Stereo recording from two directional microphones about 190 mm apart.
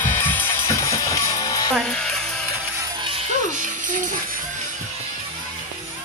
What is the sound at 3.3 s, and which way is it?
Music, 40° right (ahead or behind).